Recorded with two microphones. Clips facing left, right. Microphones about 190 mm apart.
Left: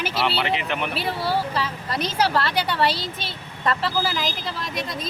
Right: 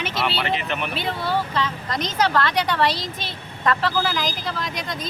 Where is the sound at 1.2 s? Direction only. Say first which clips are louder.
Even; 35° left (ahead or behind).